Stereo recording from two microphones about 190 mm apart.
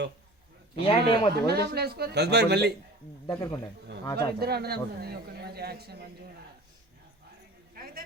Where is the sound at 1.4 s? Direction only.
55° right (ahead or behind).